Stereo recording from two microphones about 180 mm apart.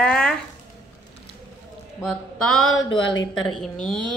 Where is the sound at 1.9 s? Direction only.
5° left (ahead or behind).